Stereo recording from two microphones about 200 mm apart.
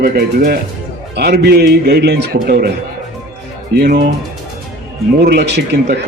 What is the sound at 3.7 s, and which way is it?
Speech, 50° right (ahead or behind).